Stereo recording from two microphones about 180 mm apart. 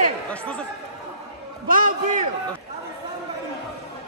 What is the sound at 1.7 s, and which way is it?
Speech, 50° right (ahead or behind).